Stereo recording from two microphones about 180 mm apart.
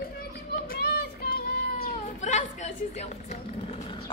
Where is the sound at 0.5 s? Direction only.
55° left (ahead or behind).